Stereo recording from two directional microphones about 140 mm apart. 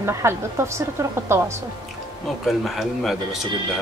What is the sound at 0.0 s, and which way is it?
A woman's voice, 20° right (ahead or behind).